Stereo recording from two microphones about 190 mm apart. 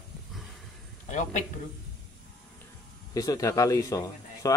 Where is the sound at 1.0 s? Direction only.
40° left (ahead or behind).